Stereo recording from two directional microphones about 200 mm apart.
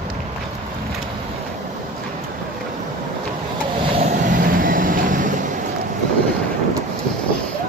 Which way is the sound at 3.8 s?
30° right (ahead or behind).